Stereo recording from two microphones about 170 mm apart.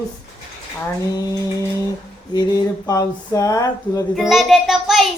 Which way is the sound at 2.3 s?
20° left (ahead or behind).